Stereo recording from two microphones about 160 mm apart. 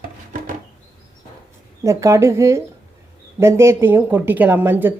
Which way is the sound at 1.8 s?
20° right (ahead or behind).